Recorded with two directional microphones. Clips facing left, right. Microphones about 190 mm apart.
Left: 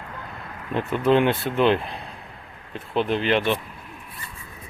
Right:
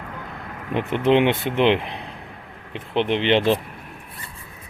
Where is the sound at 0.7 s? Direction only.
20° right (ahead or behind).